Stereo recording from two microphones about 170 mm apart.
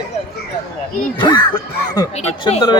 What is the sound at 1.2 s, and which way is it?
Speech, 25° left (ahead or behind).